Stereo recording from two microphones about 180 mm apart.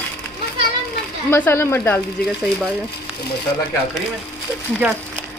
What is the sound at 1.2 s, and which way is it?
Speech, 10° left (ahead or behind).